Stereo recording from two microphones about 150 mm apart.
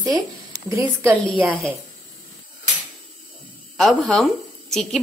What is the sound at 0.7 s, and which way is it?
Speech, 20° right (ahead or behind).